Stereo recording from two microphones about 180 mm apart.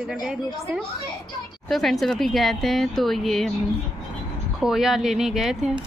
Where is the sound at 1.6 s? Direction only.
Centre (ahead or behind).